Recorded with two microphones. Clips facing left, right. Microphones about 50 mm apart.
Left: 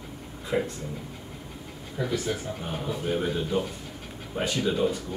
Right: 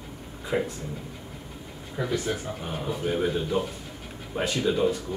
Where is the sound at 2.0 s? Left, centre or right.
Centre.